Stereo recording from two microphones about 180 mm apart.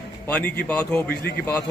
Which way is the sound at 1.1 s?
65° left (ahead or behind).